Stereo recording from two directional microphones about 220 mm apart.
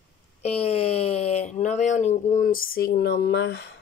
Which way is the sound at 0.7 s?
25° left (ahead or behind).